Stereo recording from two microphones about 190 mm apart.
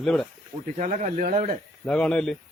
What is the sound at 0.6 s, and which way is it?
Speech, 45° right (ahead or behind).